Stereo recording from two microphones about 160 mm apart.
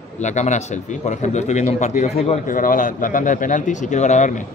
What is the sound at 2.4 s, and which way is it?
Speech, 55° left (ahead or behind).